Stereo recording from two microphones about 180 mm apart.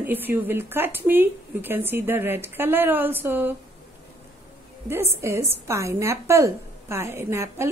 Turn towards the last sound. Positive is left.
turn(degrees=-15)  # may be behind; listen again after turning